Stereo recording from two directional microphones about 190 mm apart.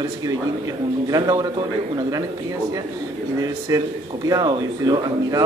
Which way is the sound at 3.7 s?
20° right (ahead or behind).